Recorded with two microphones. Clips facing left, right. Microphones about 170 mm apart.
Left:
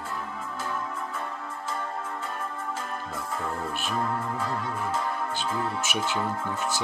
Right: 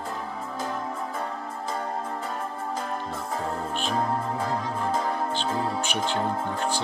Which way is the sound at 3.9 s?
35° right (ahead or behind).